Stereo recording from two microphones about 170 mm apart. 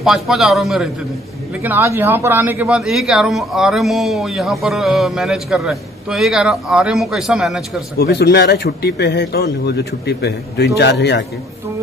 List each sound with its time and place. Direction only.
0.0 s speech: centre (ahead or behind)
1.6 s speech: 15° right (ahead or behind)
8.0 s speech: 75° left (ahead or behind); by 11.2 s 90° left